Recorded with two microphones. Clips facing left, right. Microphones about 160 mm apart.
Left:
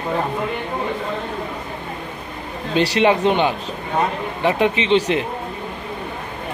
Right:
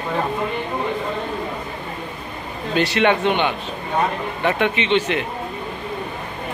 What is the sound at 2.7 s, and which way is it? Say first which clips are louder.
Speech: left 2 dB; 30° left (ahead or behind).